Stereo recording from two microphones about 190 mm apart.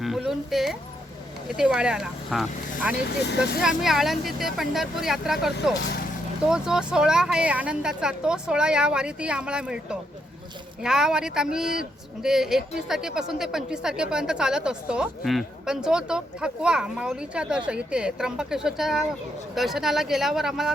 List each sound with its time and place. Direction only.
0.0 s a sound: centre (ahead or behind)
1.5 s speech: 5° right (ahead or behind)
3.2 s speech: 60° left (ahead or behind)
3.6 s speech: centre (ahead or behind)
6.5 s speech: 5° right (ahead or behind)